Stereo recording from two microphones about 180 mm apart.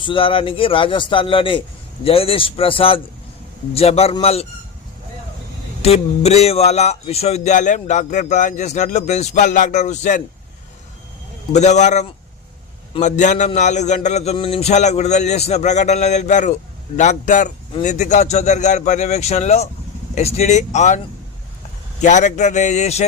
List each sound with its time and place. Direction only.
0.0 s a man's voice: 30° left (ahead or behind)
5.8 s a man's voice: 35° left (ahead or behind)
11.5 s a man's voice: 40° left (ahead or behind)
22.0 s a man's voice: 40° left (ahead or behind)